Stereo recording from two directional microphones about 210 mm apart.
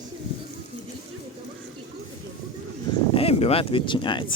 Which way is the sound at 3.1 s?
30° left (ahead or behind).